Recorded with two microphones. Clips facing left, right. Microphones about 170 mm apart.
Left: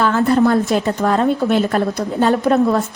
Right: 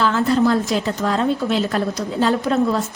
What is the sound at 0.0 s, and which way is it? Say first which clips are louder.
A woman's voice: left 3 dB; 55° left (ahead or behind).